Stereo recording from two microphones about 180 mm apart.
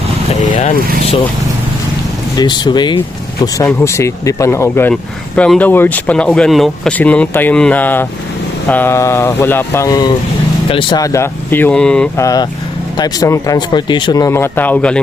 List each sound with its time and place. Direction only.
0.4 s speech: 45° left (ahead or behind)
2.4 s speech: 25° left (ahead or behind); by 12.0 s 5° left (ahead or behind)
12.1 s speech: 20° left (ahead or behind)